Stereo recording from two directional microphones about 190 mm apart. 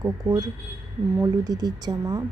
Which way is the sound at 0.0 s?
20° right (ahead or behind).